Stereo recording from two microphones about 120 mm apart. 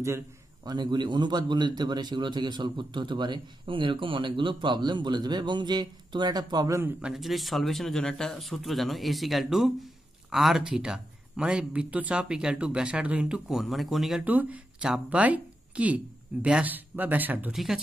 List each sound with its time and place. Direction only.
0.7 s a man's voice: 35° right (ahead or behind)
7.0 s speech: 5° right (ahead or behind)
14.2 s speech: 15° right (ahead or behind)